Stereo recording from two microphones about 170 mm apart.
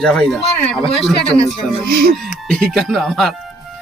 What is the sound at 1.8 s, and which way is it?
Speech, 60° right (ahead or behind).